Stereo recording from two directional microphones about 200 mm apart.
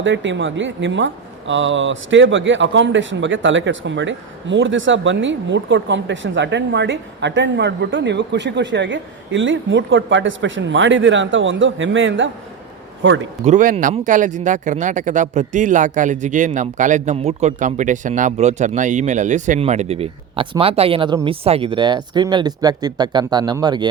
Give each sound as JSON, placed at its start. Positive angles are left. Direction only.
{"t": 0.0, "sound": "a man's voice", "side_deg": -70}
{"t": 13.4, "sound": "speech", "side_deg": -40}